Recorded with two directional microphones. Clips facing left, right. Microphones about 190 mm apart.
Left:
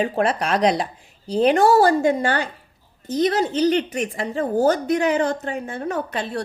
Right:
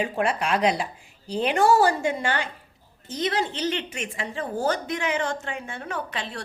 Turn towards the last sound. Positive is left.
turn(degrees=45)  # may be behind; listen again after turning